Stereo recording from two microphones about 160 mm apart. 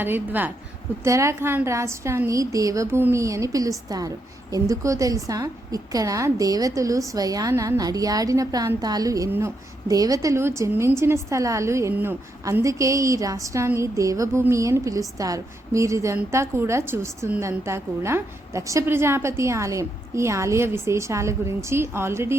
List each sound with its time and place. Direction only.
0.0 s a woman's voice: 10° right (ahead or behind)